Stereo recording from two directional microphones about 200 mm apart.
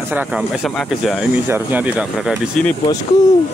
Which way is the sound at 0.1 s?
5° right (ahead or behind).